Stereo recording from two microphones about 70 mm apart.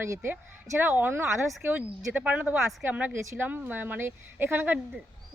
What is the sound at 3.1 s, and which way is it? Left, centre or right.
Speech, right.